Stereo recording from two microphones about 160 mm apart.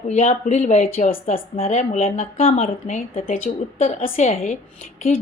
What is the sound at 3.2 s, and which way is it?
Speech, 60° left (ahead or behind).